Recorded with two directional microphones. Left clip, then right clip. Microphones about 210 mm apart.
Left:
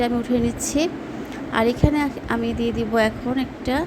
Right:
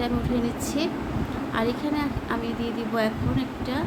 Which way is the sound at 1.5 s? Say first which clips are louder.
Left 7 dB; 30° left (ahead or behind).